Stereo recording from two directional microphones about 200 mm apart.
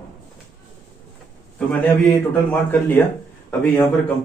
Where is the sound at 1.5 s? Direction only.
5° left (ahead or behind).